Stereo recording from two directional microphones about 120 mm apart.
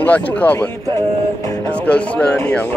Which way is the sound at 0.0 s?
15° left (ahead or behind).